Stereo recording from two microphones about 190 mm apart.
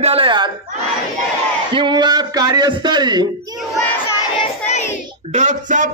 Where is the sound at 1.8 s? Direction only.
25° right (ahead or behind).